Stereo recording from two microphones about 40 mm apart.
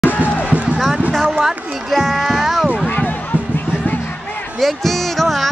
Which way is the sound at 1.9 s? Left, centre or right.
Centre.